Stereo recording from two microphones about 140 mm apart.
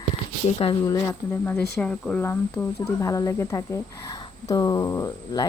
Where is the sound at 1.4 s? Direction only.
10° left (ahead or behind); by 5.5 s 25° left (ahead or behind).